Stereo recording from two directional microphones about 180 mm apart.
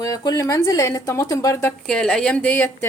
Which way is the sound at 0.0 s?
20° left (ahead or behind).